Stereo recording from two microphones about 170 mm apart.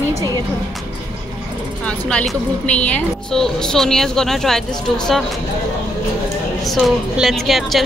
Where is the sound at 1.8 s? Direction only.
5° left (ahead or behind).